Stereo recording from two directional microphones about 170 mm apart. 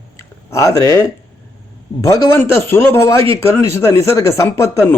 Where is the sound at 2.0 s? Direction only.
15° left (ahead or behind).